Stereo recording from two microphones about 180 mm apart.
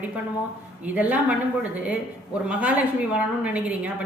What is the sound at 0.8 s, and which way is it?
Speech, 10° right (ahead or behind).